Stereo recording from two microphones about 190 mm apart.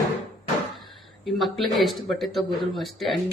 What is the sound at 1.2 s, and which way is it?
Speech, centre (ahead or behind).